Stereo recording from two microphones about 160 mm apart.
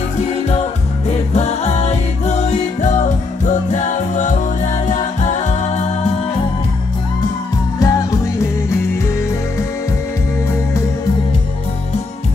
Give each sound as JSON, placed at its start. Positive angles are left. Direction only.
{"t": 0.5, "sound": "music", "side_deg": 40}
{"t": 7.8, "sound": "music", "side_deg": 20}